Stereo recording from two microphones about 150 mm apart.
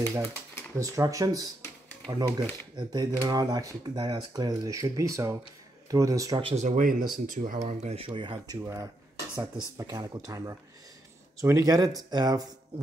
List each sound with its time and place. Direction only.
0.7 s speech: 20° right (ahead or behind)
6.4 s speech: 50° right (ahead or behind); by 12.4 s 25° right (ahead or behind)